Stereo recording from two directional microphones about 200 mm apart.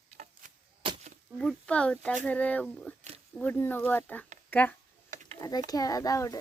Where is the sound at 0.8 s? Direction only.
25° right (ahead or behind).